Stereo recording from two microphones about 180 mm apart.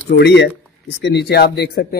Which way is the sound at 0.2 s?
75° left (ahead or behind).